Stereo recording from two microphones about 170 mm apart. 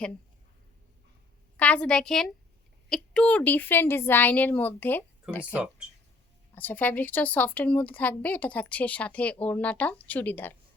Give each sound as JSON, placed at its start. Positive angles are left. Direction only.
{"t": 1.5, "sound": "a woman's voice", "side_deg": 5}